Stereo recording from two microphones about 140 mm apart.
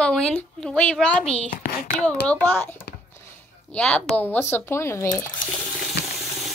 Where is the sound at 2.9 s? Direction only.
90° left.